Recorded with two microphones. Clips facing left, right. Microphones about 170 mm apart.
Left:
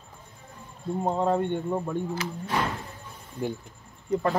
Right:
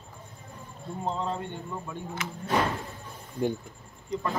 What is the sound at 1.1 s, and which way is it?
Speech, 55° left (ahead or behind).